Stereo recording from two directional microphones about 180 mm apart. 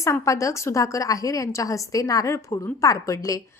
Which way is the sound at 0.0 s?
15° left (ahead or behind).